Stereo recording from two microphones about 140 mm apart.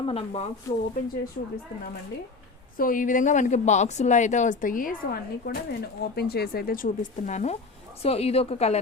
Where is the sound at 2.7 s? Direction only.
80° left.